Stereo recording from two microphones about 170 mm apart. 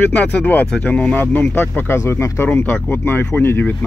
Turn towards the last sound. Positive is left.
turn(degrees=15)  # may be behind; listen again after turning